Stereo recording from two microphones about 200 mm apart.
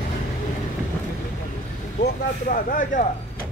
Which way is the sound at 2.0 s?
45° left (ahead or behind).